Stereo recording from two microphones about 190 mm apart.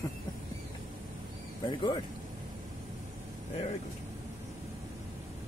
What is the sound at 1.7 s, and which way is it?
Speech, 25° left (ahead or behind).